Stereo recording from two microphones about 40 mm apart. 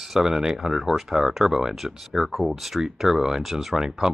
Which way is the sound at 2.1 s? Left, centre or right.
Centre.